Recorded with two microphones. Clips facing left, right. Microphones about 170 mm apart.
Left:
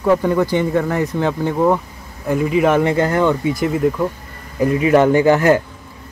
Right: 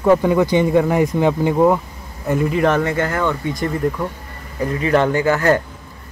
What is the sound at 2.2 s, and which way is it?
Speech, centre (ahead or behind).